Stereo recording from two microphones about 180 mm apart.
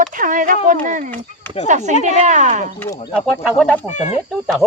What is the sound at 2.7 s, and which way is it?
Speech, 10° left (ahead or behind).